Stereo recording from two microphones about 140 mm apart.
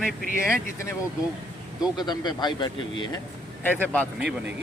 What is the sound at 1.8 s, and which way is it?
Speech, 30° left (ahead or behind).